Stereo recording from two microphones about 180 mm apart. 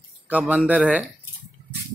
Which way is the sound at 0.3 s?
5° right (ahead or behind).